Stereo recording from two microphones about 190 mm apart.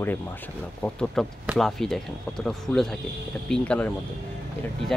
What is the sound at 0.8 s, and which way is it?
Speech, 5° left (ahead or behind).